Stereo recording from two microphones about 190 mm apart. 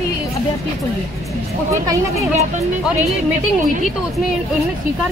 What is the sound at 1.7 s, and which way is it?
Speech, 15° right (ahead or behind).